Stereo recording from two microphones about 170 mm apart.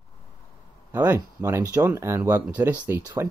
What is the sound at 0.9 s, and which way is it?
Speech, 10° right (ahead or behind).